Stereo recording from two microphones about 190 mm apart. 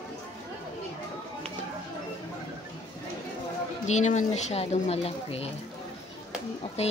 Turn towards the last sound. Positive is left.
turn(degrees=35)  # may be behind; listen again after turning